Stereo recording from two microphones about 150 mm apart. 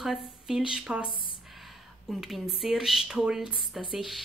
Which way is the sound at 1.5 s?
Centre (ahead or behind).